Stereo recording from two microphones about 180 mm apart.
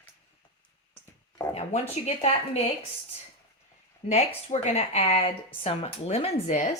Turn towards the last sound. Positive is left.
turn(degrees=40)  # may be behind; listen again after turning